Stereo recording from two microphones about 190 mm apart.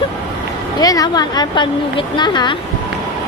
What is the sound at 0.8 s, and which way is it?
A woman's voice, 20° left (ahead or behind).